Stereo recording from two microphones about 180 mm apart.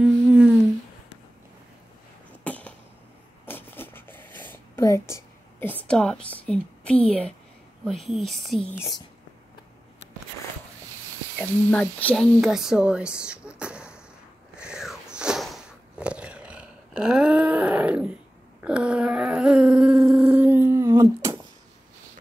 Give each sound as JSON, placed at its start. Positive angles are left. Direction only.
{"t": 0.0, "sound": "humming", "side_deg": -5}
{"t": 2.4, "sound": "a sound", "side_deg": 10}
{"t": 3.4, "sound": "writing", "side_deg": 10}
{"t": 5.9, "sound": "a woman's voice", "side_deg": 5}
{"t": 8.7, "sound": "speech", "side_deg": 20}
{"t": 11.3, "sound": "speech", "side_deg": 10}
{"t": 13.2, "sound": "a sound", "side_deg": -5}